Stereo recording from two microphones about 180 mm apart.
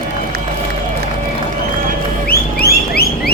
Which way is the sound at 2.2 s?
60° left (ahead or behind).